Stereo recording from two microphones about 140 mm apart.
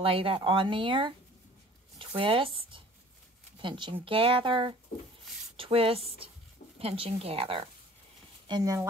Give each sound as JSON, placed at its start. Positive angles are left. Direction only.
{"t": 0.0, "sound": "speech", "side_deg": -40}
{"t": 2.0, "sound": "a sound", "side_deg": -40}
{"t": 3.5, "sound": "a woman's voice", "side_deg": -35}
{"t": 8.5, "sound": "speech", "side_deg": -30}